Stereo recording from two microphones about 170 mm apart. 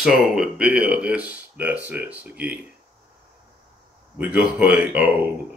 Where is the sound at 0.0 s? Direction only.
Centre (ahead or behind).